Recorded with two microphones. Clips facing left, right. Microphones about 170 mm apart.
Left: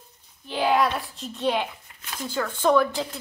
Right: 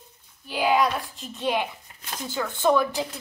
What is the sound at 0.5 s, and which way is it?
Speech, 5° right (ahead or behind).